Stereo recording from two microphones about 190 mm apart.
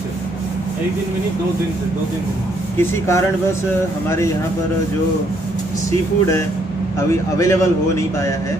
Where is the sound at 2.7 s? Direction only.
15° left (ahead or behind).